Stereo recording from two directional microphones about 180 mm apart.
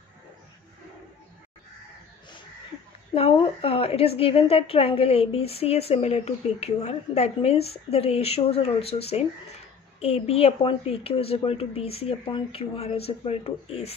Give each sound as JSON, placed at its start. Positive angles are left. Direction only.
{"t": 3.2, "sound": "a woman's voice", "side_deg": 30}